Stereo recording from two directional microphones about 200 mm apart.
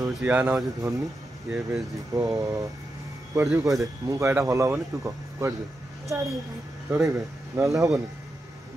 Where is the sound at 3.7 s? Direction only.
15° right (ahead or behind).